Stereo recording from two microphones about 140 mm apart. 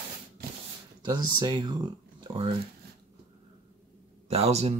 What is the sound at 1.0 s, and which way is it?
Speech, 30° right (ahead or behind).